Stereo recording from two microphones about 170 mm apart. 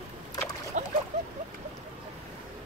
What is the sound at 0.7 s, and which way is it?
Boat, 50° right (ahead or behind).